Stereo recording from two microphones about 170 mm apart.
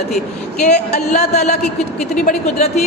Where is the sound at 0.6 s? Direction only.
45° left (ahead or behind).